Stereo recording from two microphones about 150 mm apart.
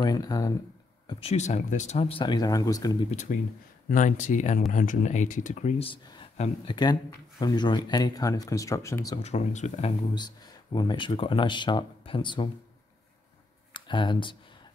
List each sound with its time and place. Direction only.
0.0 s speech: 25° left (ahead or behind)
1.0 s speech: 45° left (ahead or behind); by 3.0 s 25° left (ahead or behind)
3.1 s speech: 50° left (ahead or behind)
6.7 s speech: 30° left (ahead or behind)
9.2 s speech: 50° left (ahead or behind)
10.1 s speech: 30° left (ahead or behind)
13.7 s speech: 30° left (ahead or behind)